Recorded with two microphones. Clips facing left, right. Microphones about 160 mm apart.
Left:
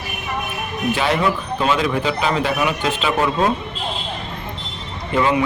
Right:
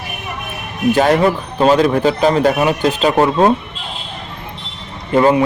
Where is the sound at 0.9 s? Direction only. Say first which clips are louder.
Right 7 dB; 40° right (ahead or behind).